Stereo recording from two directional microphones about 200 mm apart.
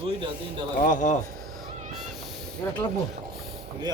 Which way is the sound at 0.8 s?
40° left (ahead or behind).